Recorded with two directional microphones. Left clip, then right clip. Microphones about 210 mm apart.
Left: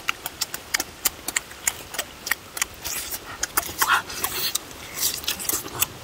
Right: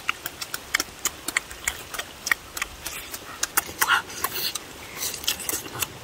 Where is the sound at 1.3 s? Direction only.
55° left (ahead or behind).